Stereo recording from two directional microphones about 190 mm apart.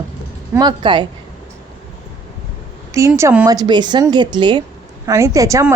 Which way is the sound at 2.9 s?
15° right (ahead or behind).